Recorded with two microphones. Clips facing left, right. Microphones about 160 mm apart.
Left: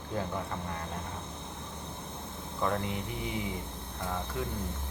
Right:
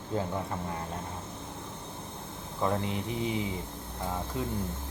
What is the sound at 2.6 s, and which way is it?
Speech, 20° right (ahead or behind).